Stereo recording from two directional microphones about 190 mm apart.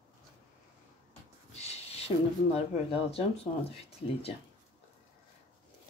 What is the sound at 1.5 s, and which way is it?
Speech, 35° left (ahead or behind).